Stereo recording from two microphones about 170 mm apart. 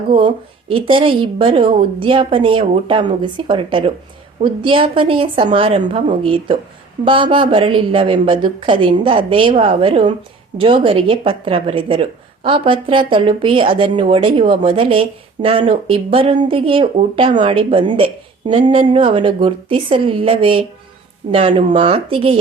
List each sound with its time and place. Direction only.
0.1 s a woman's voice: 30° right (ahead or behind)